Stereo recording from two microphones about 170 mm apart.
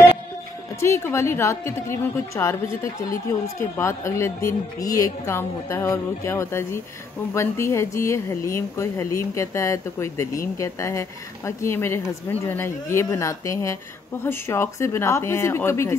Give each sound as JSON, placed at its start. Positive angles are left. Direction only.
{"t": 0.7, "sound": "a woman's voice", "side_deg": 15}